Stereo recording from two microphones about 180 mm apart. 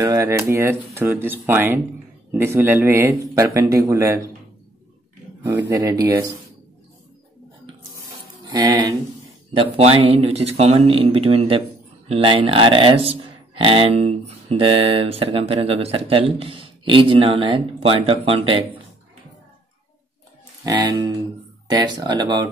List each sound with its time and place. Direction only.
0.0 s a man's voice: 20° right (ahead or behind)
5.4 s a man's voice: 15° right (ahead or behind)
8.5 s speech: 20° right (ahead or behind)
9.6 s speech: 30° right (ahead or behind)
20.6 s speech: 25° right (ahead or behind)